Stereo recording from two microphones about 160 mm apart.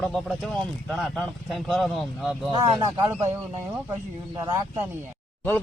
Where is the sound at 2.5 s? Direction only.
20° right (ahead or behind).